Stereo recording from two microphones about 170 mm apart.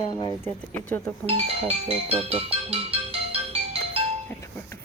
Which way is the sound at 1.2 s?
35° right (ahead or behind).